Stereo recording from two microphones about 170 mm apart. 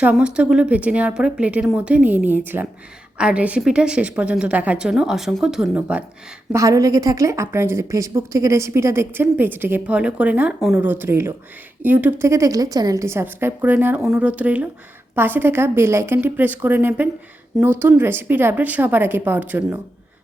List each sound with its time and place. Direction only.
0.0 s a woman's voice: 5° right (ahead or behind)
6.5 s speech: 20° right (ahead or behind)